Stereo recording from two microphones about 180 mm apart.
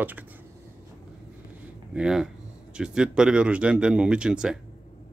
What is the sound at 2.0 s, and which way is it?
Speech, 5° right (ahead or behind).